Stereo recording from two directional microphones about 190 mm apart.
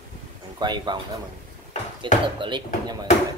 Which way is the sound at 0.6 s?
25° right (ahead or behind).